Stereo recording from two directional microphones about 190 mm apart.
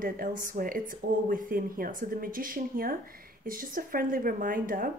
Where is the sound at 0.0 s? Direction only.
45° right (ahead or behind).